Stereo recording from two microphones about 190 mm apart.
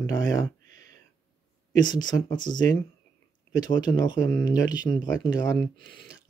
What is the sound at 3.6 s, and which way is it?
Speech, 20° left (ahead or behind).